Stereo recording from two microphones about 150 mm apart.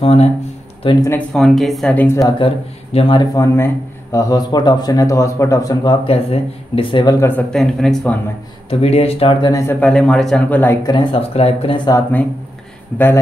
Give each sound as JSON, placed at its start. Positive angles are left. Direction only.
{"t": 0.0, "sound": "speech", "side_deg": 45}
{"t": 1.1, "sound": "speech", "side_deg": 0}
{"t": 2.2, "sound": "speech", "side_deg": 35}
{"t": 3.3, "sound": "speech", "side_deg": 20}
{"t": 6.0, "sound": "speech", "side_deg": 40}
{"t": 7.2, "sound": "a man's voice", "side_deg": 15}
{"t": 7.5, "sound": "speech", "side_deg": 5}
{"t": 8.6, "sound": "speech", "side_deg": 40}
{"t": 9.6, "sound": "a man's voice", "side_deg": 10}
{"t": 10.8, "sound": "speech", "side_deg": 30}
{"t": 12.9, "sound": "a man's voice", "side_deg": 15}